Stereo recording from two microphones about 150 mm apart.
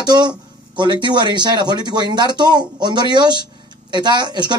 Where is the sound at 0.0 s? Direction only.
30° right (ahead or behind).